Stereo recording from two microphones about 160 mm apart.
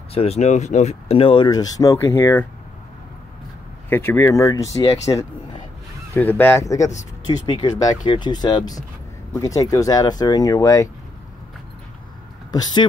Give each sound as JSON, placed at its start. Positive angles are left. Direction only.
{"t": 0.1, "sound": "speech", "side_deg": 40}
{"t": 3.9, "sound": "speech", "side_deg": 15}
{"t": 6.1, "sound": "speech", "side_deg": 10}
{"t": 12.4, "sound": "speech", "side_deg": 25}